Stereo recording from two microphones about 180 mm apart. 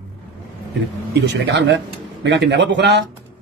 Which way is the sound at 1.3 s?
75° right (ahead or behind).